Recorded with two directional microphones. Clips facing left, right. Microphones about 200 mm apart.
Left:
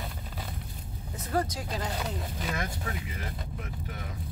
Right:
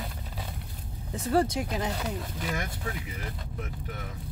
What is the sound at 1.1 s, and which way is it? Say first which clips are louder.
Speech: right 5 dB; 30° right (ahead or behind).